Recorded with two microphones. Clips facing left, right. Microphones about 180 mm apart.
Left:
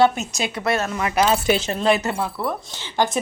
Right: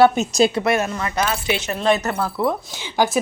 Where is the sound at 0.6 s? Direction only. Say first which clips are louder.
Right 3 dB; 20° right (ahead or behind).